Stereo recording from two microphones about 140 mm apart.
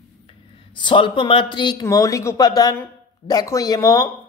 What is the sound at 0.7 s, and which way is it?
Speech, 35° left (ahead or behind).